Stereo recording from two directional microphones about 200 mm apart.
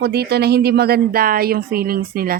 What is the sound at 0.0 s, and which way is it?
Speech, 55° right (ahead or behind).